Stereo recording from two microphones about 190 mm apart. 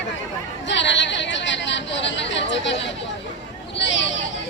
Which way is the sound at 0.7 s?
70° left (ahead or behind).